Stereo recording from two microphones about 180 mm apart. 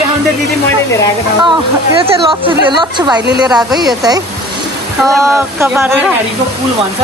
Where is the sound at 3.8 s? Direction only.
20° right (ahead or behind).